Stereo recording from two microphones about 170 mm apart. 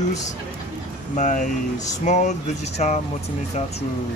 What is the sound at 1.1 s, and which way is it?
Speech, 45° left (ahead or behind).